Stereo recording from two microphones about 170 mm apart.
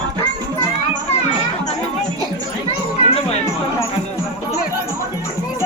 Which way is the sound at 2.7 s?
35° left (ahead or behind).